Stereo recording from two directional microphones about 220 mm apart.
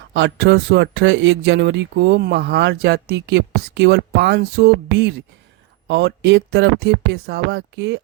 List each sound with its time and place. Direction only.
0.1 s speech: 50° right (ahead or behind)